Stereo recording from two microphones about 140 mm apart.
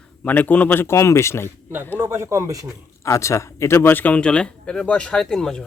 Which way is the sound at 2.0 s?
20° right (ahead or behind).